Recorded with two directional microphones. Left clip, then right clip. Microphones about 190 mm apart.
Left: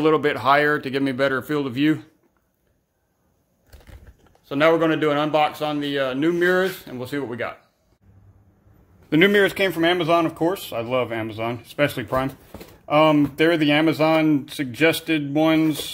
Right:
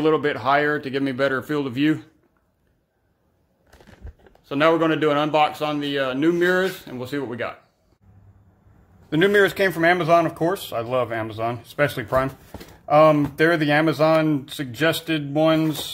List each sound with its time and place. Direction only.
0.0 s speech: 15° left (ahead or behind)
4.5 s a man's voice: centre (ahead or behind)
9.1 s speech: 35° left (ahead or behind)
9.4 s speech: 15° left (ahead or behind)
9.7 s speech: centre (ahead or behind); by 15.9 s 20° left (ahead or behind)